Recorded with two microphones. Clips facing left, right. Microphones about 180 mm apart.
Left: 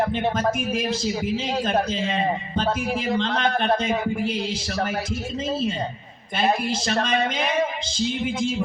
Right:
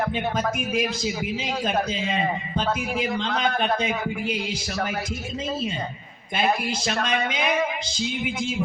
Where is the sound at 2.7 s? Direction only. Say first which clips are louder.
Left 2 dB; 30° left (ahead or behind).